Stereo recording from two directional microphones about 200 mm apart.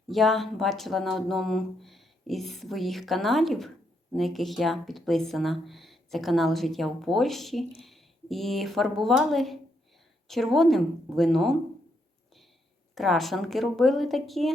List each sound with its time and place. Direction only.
0.1 s a woman's voice: centre (ahead or behind)
12.9 s speech: centre (ahead or behind)